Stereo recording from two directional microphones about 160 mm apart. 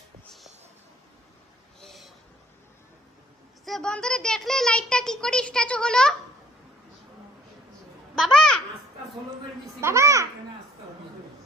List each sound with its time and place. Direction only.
1.8 s a sound: centre (ahead or behind)
3.6 s a child's voice: 5° left (ahead or behind)
8.2 s babbling: centre (ahead or behind)
9.8 s a child's voice: 15° right (ahead or behind)